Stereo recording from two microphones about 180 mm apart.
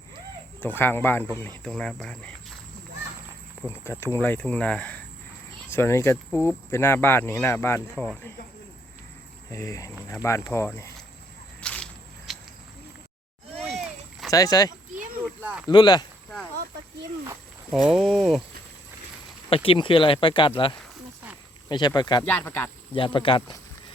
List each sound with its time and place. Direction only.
0.6 s speech: 10° left (ahead or behind)
3.7 s speech: 15° left (ahead or behind)
9.5 s speech: 15° left (ahead or behind)
11.6 s a sound: 5° left (ahead or behind)
13.7 s a sound: centre (ahead or behind)
14.3 s speech: 20° left (ahead or behind)
15.4 s a sound: 10° right (ahead or behind)
15.6 s speech: 25° left (ahead or behind)
17.7 s speech: 5° right (ahead or behind)
19.5 s speech: 30° left (ahead or behind)
22.3 s speech: 10° left (ahead or behind)
23.0 s speech: 30° left (ahead or behind)